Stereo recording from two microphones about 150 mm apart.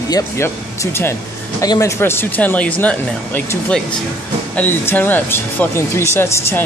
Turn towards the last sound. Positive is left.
turn(degrees=15)  # may be behind; listen again after turning